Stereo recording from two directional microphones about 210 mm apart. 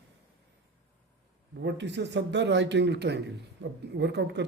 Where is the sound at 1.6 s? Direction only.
55° right (ahead or behind).